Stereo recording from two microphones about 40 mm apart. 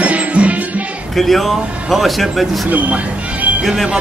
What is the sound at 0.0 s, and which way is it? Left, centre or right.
Music, right.